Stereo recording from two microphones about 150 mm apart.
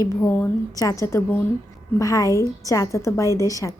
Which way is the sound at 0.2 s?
15° left (ahead or behind).